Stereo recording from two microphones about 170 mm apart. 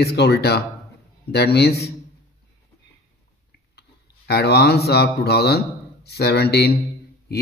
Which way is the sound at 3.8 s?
70° left (ahead or behind).